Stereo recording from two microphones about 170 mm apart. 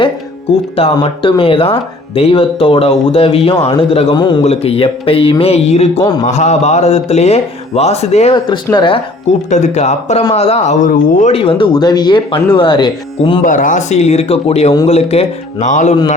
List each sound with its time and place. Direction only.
0.8 s speech: 30° left (ahead or behind)
4.1 s speech: 25° left (ahead or behind)
4.4 s speech: 35° left (ahead or behind)
9.5 s speech: 40° left (ahead or behind)
11.3 s speech: 30° left (ahead or behind)
13.4 s speech: 50° left (ahead or behind)